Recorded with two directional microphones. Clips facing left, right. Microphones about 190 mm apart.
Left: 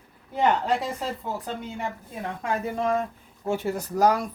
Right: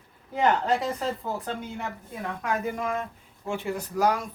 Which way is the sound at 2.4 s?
30° left (ahead or behind).